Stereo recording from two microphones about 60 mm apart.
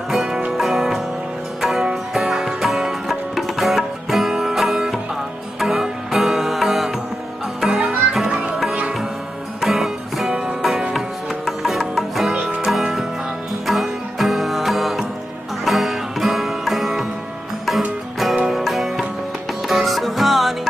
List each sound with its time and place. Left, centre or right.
0.1 s music: centre
8.3 s music: centre
9.6 s music: centre
18.5 s music: centre